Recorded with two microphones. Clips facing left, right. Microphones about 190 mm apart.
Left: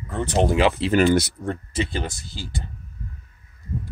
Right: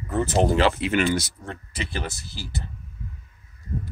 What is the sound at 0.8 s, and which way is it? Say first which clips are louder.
Speech: left 5 dB; 40° left (ahead or behind).